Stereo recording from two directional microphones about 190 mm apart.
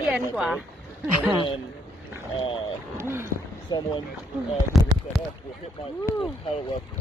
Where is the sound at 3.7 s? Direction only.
25° left (ahead or behind).